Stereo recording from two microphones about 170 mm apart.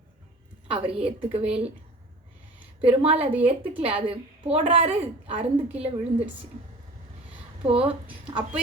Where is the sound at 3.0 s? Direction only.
35° right (ahead or behind).